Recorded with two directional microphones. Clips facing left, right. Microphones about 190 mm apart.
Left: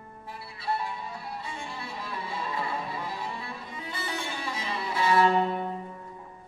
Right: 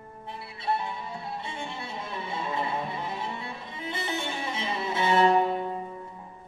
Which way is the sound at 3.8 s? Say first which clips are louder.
Right 4 dB; 25° right (ahead or behind).